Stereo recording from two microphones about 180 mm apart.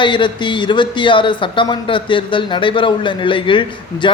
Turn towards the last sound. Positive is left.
turn(degrees=30)  # may be behind; listen again after turning